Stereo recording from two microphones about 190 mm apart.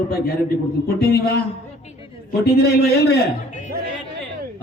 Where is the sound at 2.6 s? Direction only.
55° left (ahead or behind).